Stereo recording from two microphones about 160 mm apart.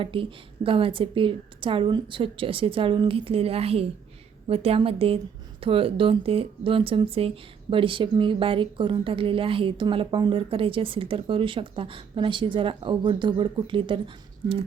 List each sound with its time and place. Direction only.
0.0 s a woman's voice: 35° right (ahead or behind)